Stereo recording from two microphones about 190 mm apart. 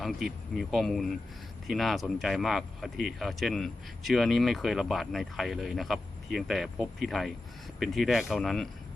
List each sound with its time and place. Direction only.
0.0 s speech: centre (ahead or behind)